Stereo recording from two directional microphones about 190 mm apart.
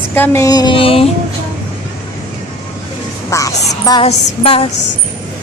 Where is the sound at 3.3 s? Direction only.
15° left (ahead or behind).